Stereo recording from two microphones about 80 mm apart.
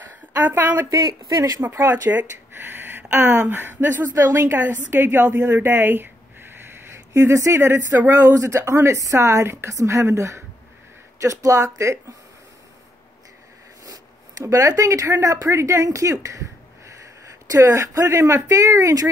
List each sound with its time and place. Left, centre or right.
0.1 s a sound: right
0.8 s speech: right
1.6 s a woman's voice: right
14.4 s a woman's voice: right
17.5 s speech: right